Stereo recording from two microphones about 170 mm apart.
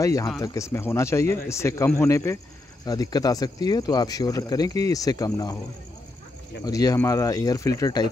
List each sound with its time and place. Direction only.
0.0 s speech: 20° left (ahead or behind)
6.6 s speech: 20° left (ahead or behind)